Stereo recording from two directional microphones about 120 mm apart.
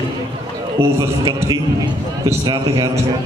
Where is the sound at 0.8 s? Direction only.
20° right (ahead or behind).